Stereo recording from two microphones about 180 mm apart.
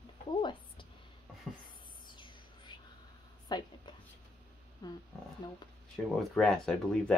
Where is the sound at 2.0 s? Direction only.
25° left (ahead or behind).